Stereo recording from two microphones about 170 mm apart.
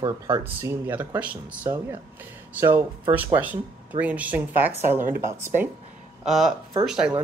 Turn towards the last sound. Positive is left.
turn(degrees=-5)  # may be behind; listen again after turning